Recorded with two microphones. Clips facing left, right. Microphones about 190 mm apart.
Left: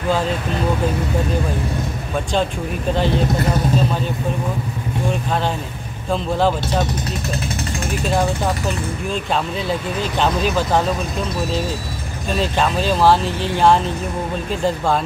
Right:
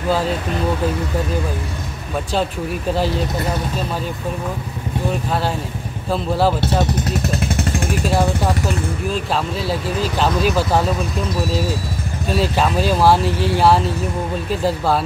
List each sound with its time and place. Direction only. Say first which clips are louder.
6.0 s speech: even; 5° right (ahead or behind)
9.1 s speech: left 2 dB; 5° right (ahead or behind)
12.3 s speech: right 1 dB; 5° right (ahead or behind)